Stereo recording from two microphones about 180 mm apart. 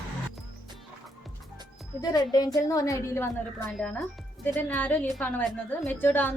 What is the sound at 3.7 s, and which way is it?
A woman's voice, centre (ahead or behind).